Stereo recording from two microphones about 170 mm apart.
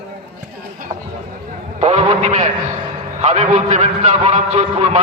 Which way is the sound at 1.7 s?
40° right (ahead or behind).